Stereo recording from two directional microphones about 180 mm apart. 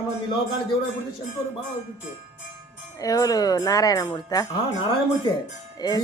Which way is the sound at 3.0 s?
20° left (ahead or behind).